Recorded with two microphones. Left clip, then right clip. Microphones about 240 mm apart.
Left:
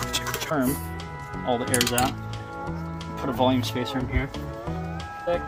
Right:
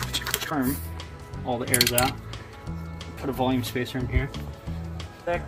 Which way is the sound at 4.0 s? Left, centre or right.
Centre.